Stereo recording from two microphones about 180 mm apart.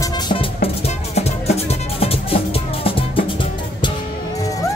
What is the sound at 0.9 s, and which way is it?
Music, 35° left (ahead or behind).